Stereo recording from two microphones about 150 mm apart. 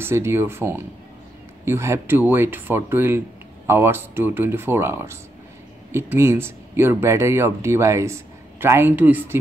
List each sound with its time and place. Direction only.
0.0 s speech: 15° right (ahead or behind)